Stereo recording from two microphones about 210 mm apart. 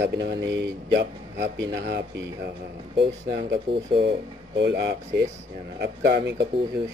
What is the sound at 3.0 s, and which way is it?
Speech, 50° right (ahead or behind).